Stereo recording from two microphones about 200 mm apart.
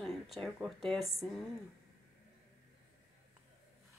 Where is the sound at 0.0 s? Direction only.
Centre (ahead or behind).